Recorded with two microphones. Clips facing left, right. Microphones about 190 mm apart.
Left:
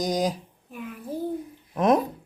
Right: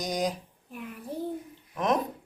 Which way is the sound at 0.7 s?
Centre (ahead or behind).